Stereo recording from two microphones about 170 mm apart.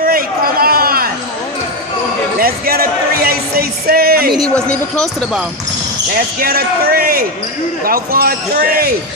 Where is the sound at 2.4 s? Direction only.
60° right (ahead or behind).